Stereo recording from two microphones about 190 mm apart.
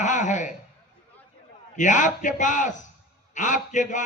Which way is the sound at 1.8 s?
40° left (ahead or behind).